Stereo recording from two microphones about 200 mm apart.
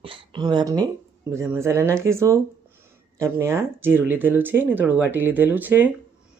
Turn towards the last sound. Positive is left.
turn(degrees=-10)  # may be behind; listen again after turning